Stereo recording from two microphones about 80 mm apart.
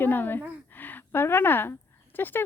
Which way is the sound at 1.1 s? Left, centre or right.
Left.